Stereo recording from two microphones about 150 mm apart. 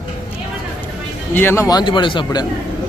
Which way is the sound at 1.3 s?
15° left (ahead or behind).